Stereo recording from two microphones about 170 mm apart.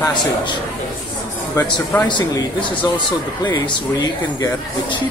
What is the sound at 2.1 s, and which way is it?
Speech, 30° left (ahead or behind).